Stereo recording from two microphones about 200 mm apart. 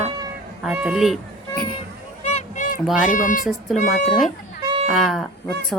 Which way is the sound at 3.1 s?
45° left (ahead or behind).